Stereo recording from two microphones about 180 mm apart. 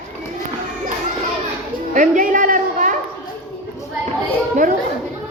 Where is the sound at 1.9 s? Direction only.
45° right (ahead or behind).